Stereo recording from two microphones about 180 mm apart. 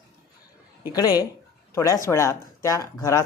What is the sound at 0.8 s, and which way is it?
A woman's voice, 20° left (ahead or behind).